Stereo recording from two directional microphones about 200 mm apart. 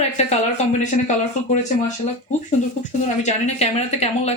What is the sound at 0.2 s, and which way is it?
Speech, 35° left (ahead or behind).